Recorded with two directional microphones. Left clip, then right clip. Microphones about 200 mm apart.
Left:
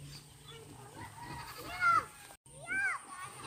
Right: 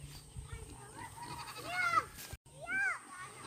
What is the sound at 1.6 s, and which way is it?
Goat, 40° right (ahead or behind).